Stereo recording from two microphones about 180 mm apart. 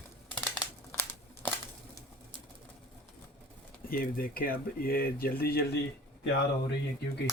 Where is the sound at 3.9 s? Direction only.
55° left (ahead or behind).